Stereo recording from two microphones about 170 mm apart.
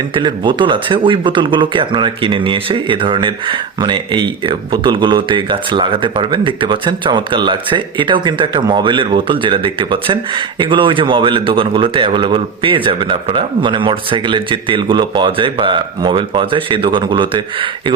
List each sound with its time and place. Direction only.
0.1 s speech: 25° right (ahead or behind)